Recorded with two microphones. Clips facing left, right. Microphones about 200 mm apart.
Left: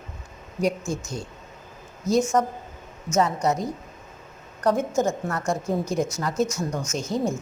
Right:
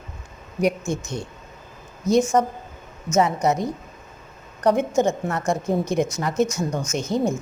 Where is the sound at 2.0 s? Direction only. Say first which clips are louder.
Right 3 dB; centre (ahead or behind).